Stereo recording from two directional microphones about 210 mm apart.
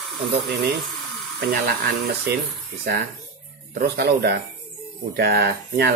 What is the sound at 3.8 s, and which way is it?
Speech, 50° right (ahead or behind).